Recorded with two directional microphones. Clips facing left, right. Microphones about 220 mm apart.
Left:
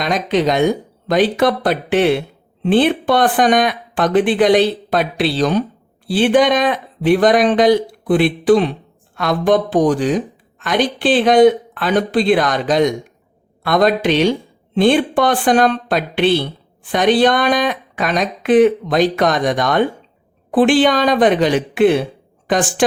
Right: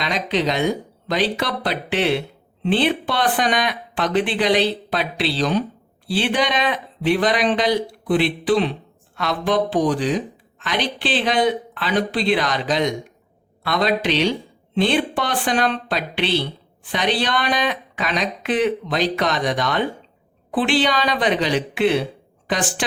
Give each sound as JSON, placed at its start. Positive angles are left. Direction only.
{"t": 0.0, "sound": "speech", "side_deg": 50}